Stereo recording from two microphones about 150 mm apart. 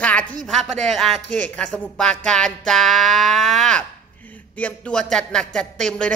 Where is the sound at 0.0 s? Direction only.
10° left (ahead or behind).